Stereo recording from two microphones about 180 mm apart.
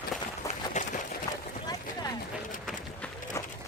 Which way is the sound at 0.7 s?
45° left (ahead or behind).